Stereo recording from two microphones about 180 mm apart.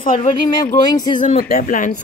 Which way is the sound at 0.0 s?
50° left (ahead or behind).